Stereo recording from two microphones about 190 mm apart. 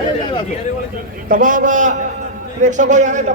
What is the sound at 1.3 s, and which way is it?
A man's voice, 45° right (ahead or behind).